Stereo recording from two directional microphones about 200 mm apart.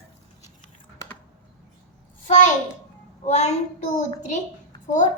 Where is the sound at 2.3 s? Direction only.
40° left (ahead or behind).